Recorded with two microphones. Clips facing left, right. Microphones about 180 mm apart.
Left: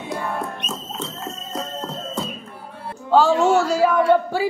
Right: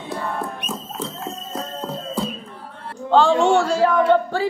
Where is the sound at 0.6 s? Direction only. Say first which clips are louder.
Right 1 dB; 10° right (ahead or behind).